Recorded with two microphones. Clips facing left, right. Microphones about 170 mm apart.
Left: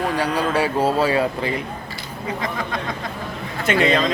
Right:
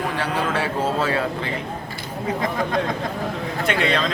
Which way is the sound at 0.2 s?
15° left (ahead or behind).